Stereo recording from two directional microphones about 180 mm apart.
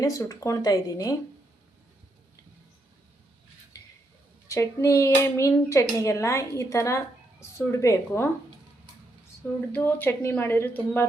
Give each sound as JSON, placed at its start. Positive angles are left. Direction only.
{"t": 0.0, "sound": "speech", "side_deg": 20}
{"t": 4.4, "sound": "speech", "side_deg": 15}
{"t": 9.7, "sound": "speech", "side_deg": 10}